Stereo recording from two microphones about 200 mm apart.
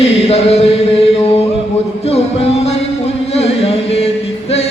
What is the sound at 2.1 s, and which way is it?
Music, 30° left (ahead or behind).